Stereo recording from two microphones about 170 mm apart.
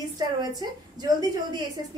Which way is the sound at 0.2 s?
25° right (ahead or behind).